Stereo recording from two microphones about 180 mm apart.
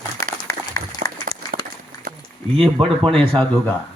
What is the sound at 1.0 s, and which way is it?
Applause, 55° right (ahead or behind).